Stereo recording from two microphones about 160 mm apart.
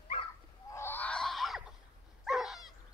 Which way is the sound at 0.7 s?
15° left (ahead or behind).